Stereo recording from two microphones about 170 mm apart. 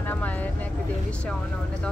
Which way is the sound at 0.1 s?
10° left (ahead or behind).